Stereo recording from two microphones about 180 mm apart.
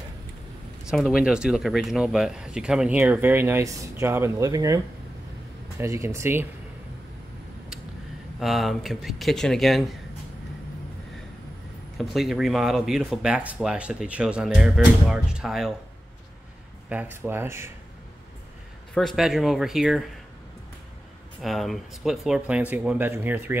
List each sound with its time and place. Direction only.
0.8 s speech: centre (ahead or behind)
8.4 s speech: centre (ahead or behind)
12.0 s speech: centre (ahead or behind)
16.9 s speech: 10° right (ahead or behind)
18.9 s speech: centre (ahead or behind)
21.4 s speech: centre (ahead or behind)